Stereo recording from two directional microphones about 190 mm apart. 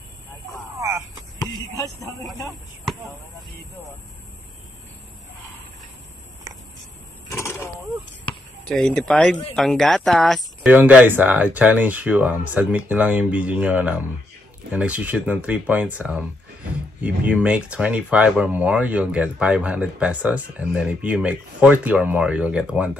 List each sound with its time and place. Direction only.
0.7 s a sound: 15° right (ahead or behind)
7.3 s door: 15° left (ahead or behind)
8.6 s speech: 5° left (ahead or behind)